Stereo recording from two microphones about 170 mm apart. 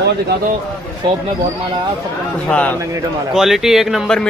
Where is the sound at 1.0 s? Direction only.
30° right (ahead or behind).